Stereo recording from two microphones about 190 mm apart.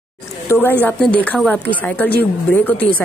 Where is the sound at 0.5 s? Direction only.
10° left (ahead or behind).